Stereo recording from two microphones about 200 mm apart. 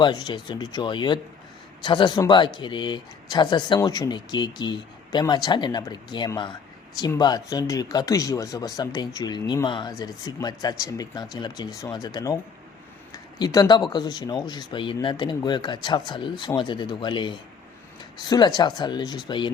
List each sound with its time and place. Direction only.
0.0 s speech: 20° left (ahead or behind)
13.4 s speech: 20° left (ahead or behind)